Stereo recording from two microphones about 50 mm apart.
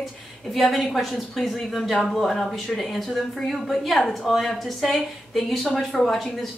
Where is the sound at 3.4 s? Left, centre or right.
Centre.